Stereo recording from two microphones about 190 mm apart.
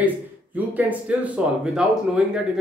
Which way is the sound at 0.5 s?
10° right (ahead or behind).